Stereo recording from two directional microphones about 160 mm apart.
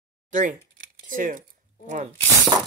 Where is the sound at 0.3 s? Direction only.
50° right (ahead or behind).